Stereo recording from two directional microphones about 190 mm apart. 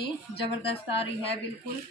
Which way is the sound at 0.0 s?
30° left (ahead or behind).